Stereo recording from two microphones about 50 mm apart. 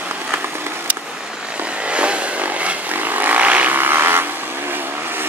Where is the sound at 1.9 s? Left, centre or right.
Right.